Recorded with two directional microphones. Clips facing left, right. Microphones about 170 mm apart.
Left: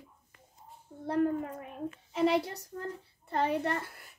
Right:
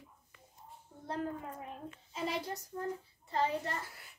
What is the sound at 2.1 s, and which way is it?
A woman's voice, 65° left (ahead or behind).